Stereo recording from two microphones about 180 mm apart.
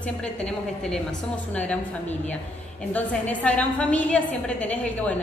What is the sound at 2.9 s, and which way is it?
A woman's voice, 10° left (ahead or behind).